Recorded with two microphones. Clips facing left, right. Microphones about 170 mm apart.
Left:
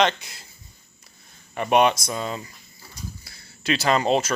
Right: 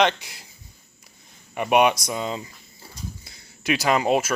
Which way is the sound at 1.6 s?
10° right (ahead or behind).